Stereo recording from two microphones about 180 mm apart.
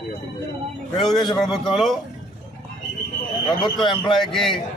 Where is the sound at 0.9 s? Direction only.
Centre (ahead or behind).